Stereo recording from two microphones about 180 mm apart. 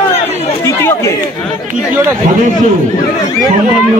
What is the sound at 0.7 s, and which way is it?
Chatter, 15° left (ahead or behind).